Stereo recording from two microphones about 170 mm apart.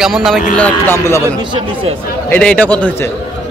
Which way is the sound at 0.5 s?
10° left (ahead or behind).